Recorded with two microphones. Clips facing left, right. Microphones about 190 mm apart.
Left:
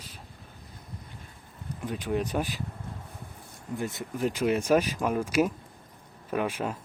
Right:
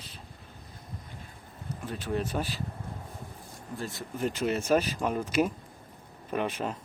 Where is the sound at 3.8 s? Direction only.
20° left (ahead or behind).